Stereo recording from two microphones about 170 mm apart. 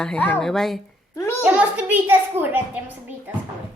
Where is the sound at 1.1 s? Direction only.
15° left (ahead or behind).